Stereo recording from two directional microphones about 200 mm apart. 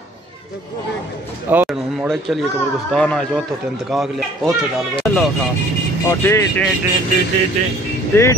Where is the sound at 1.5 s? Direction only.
5° right (ahead or behind).